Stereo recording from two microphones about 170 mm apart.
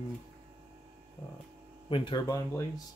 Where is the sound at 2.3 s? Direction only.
20° left (ahead or behind).